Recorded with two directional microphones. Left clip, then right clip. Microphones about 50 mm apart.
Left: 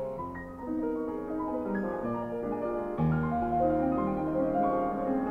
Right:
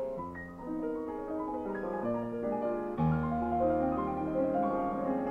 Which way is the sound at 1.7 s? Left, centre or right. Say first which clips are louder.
Left 1 dB; centre.